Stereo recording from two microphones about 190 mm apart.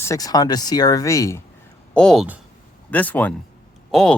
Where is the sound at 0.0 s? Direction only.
15° left (ahead or behind).